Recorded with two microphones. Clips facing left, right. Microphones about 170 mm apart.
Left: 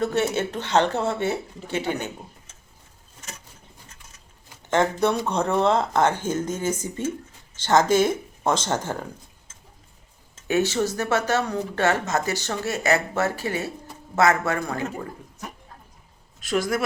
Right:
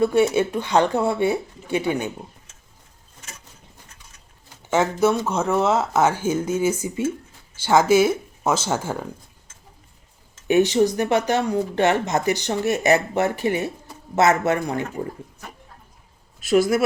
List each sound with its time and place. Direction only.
0.0 s speech: 10° right (ahead or behind)
4.7 s speech: 5° right (ahead or behind)
10.5 s a man's voice: 15° right (ahead or behind)
16.4 s speech: 10° right (ahead or behind)